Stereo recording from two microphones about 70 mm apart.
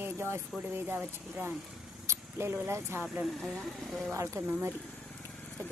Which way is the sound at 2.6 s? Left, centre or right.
Right.